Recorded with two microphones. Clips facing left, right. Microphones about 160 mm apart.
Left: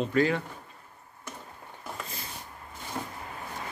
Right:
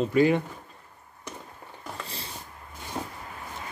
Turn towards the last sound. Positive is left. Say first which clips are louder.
# right 2 dB
turn(degrees=-20)  # may be behind; listen again after turning